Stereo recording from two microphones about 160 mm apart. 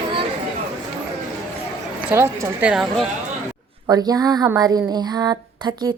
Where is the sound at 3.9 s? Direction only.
25° right (ahead or behind).